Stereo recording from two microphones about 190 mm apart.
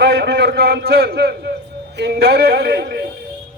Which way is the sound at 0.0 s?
60° right (ahead or behind).